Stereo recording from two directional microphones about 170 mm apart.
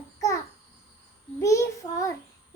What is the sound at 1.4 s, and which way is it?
Child singing, 20° left (ahead or behind).